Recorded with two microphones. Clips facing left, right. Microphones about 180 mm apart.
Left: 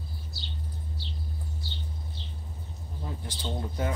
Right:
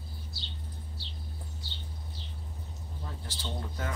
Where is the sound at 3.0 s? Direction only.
20° left (ahead or behind).